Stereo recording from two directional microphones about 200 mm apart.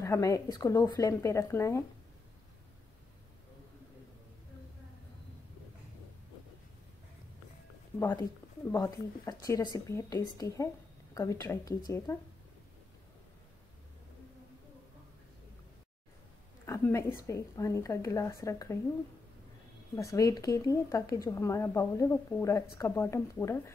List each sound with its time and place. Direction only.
0.0 s speech: 15° left (ahead or behind)
8.0 s speech: 15° left (ahead or behind)
16.6 s speech: 15° left (ahead or behind)
20.0 s speech: 15° left (ahead or behind)